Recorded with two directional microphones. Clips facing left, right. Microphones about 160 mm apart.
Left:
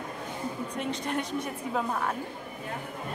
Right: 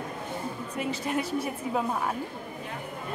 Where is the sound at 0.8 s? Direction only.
5° right (ahead or behind).